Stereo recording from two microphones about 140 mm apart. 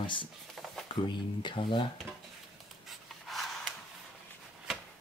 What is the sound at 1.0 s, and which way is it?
Speech, 35° left (ahead or behind).